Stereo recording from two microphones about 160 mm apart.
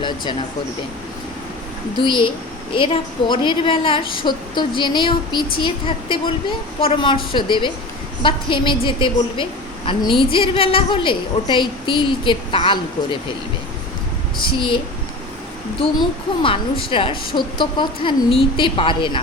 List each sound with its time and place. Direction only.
2.0 s a woman's voice: 30° left (ahead or behind)
14.4 s a woman's voice: 30° left (ahead or behind)
15.8 s a woman's voice: 35° left (ahead or behind)